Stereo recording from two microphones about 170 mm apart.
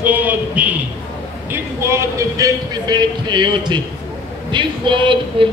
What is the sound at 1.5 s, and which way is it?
A man's voice, 15° right (ahead or behind).